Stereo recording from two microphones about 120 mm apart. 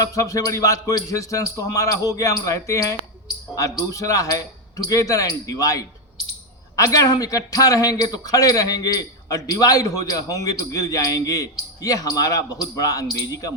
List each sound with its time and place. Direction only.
0.0 s a man's voice: 30° left (ahead or behind)